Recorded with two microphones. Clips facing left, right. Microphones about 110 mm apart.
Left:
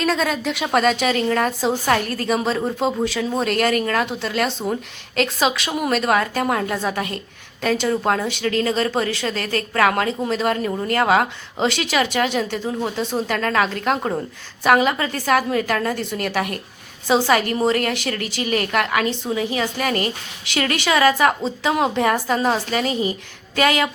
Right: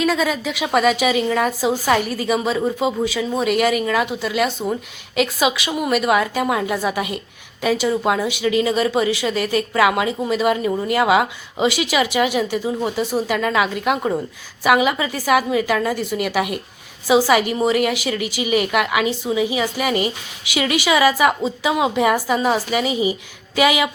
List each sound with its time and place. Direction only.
0.0 s a woman's voice: 5° right (ahead or behind)